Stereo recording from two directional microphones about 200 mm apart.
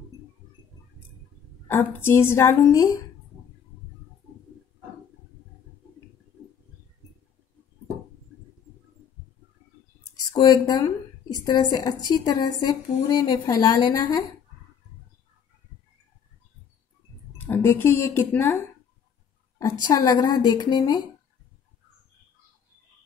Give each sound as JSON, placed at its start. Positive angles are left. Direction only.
{"t": 1.7, "sound": "a woman's voice", "side_deg": 10}
{"t": 10.3, "sound": "a woman's voice", "side_deg": 20}
{"t": 17.4, "sound": "speech", "side_deg": 10}
{"t": 19.6, "sound": "speech", "side_deg": 20}